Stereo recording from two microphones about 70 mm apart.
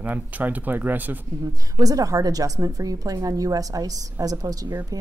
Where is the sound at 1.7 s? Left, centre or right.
Right.